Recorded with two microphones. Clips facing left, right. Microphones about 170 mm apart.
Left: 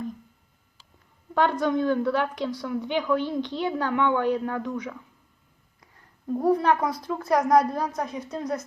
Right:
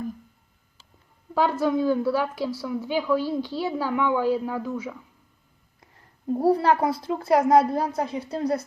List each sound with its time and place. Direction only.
1.3 s a woman's voice: 5° right (ahead or behind)
6.4 s a woman's voice: 30° right (ahead or behind)